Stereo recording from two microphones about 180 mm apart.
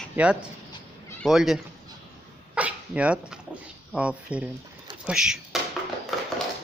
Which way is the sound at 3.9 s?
5° right (ahead or behind).